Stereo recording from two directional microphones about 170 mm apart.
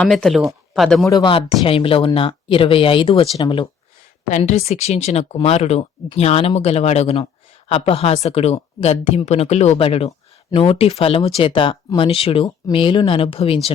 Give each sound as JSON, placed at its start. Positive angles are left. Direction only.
{"t": 0.0, "sound": "speech", "side_deg": 5}
{"t": 1.1, "sound": "speech", "side_deg": 30}
{"t": 4.3, "sound": "speech", "side_deg": 45}